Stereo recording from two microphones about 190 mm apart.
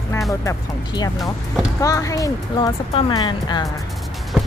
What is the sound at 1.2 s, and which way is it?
Speech, centre (ahead or behind).